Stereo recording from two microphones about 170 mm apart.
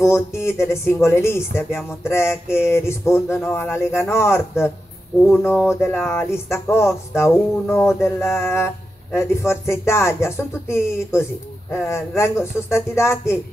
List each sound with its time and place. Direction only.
0.0 s speech: 15° left (ahead or behind)